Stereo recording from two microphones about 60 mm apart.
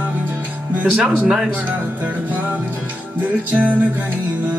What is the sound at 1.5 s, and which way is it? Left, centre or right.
Music, right.